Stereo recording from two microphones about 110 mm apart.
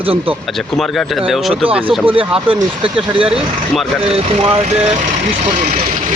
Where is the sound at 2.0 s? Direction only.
55° right (ahead or behind); by 4.9 s 75° right (ahead or behind).